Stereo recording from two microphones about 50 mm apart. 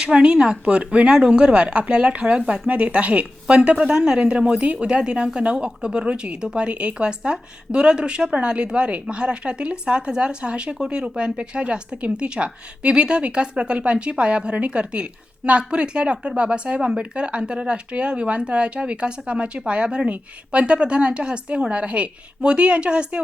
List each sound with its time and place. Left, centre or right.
0.0 s speech: centre